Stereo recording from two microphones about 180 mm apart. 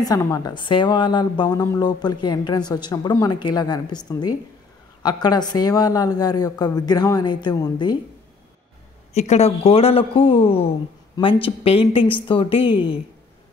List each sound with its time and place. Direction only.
0.0 s a woman's voice: 20° left (ahead or behind)
5.0 s a woman's voice: 25° left (ahead or behind)
9.1 s speech: 35° left (ahead or behind)